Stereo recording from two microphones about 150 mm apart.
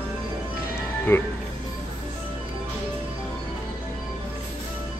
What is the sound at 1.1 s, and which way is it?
Speech, 15° left (ahead or behind).